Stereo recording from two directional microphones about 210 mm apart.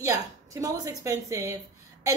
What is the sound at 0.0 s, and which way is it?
A woman's voice, 15° right (ahead or behind).